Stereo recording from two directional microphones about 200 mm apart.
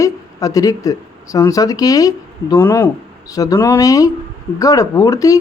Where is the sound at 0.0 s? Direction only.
15° left (ahead or behind).